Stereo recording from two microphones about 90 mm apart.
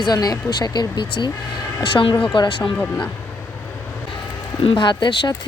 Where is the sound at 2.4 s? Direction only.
70° left (ahead or behind).